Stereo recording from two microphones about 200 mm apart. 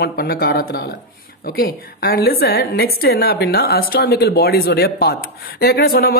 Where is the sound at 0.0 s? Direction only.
50° left (ahead or behind).